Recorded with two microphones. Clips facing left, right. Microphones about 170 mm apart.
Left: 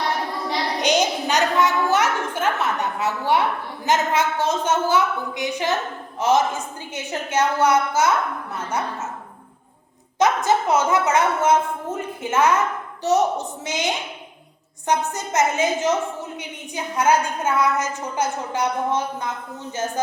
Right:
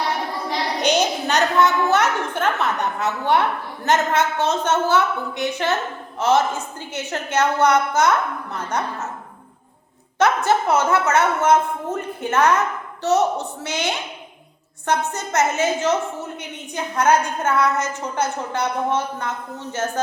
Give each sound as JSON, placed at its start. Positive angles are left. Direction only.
{"t": 0.8, "sound": "a woman's voice", "side_deg": 15}
{"t": 10.4, "sound": "a woman's voice", "side_deg": 15}